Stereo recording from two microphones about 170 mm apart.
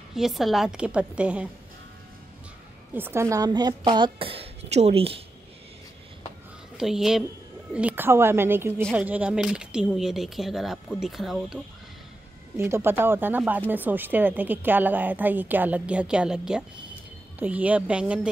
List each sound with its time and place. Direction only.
0.1 s speech: centre (ahead or behind)
2.9 s speech: 15° right (ahead or behind); by 5.2 s 35° right (ahead or behind)
6.8 s a woman's voice: centre (ahead or behind)
12.5 s a woman's voice: 15° right (ahead or behind)